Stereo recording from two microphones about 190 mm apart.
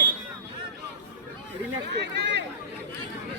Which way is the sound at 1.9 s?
65° right (ahead or behind).